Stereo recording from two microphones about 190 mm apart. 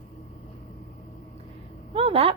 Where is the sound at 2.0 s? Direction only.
30° right (ahead or behind).